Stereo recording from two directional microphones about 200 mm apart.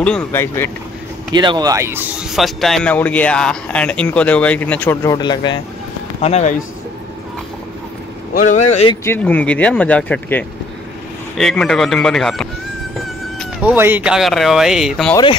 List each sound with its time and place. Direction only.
0.0 s speech: 10° left (ahead or behind)
1.3 s a man's voice: 20° right (ahead or behind); by 5.6 s 20° left (ahead or behind)
6.2 s speech: 35° left (ahead or behind)
8.4 s speech: 40° left (ahead or behind)
9.0 s a man's voice: 10° left (ahead or behind)
13.0 s a sound: centre (ahead or behind)
13.7 s a man's voice: 10° right (ahead or behind)